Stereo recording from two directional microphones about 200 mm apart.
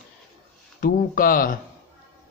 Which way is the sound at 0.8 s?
45° left (ahead or behind).